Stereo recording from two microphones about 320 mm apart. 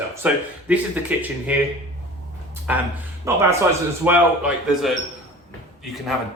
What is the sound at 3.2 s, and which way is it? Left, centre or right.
A man's voice, centre.